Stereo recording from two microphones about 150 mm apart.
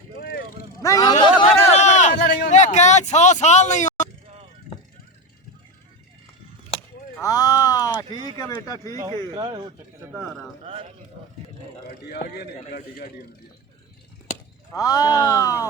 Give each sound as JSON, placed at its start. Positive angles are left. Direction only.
{"t": 0.2, "sound": "vehicle", "side_deg": 90}
{"t": 0.8, "sound": "a sound", "side_deg": 20}
{"t": 1.7, "sound": "a sound", "side_deg": 50}
{"t": 2.5, "sound": "music", "side_deg": 50}
{"t": 7.2, "sound": "speech", "side_deg": 25}
{"t": 9.3, "sound": "a man's voice", "side_deg": -30}
{"t": 10.1, "sound": "a man's voice", "side_deg": 0}
{"t": 10.6, "sound": "a man's voice", "side_deg": -40}
{"t": 11.9, "sound": "a man's voice", "side_deg": 80}
{"t": 14.7, "sound": "speech", "side_deg": 25}